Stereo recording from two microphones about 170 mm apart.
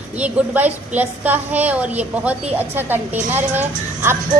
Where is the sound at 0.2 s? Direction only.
10° right (ahead or behind).